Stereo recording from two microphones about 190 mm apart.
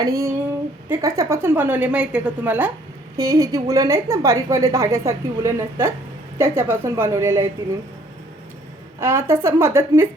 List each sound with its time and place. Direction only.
0.0 s a woman's voice: 15° right (ahead or behind)
9.0 s a woman's voice: 15° right (ahead or behind)